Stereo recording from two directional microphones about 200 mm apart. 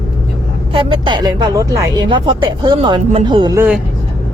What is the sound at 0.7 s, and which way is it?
Speech, 25° right (ahead or behind).